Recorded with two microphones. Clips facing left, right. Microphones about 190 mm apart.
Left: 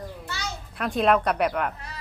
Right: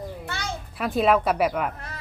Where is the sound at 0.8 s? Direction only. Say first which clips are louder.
Right 1 dB; 5° right (ahead or behind).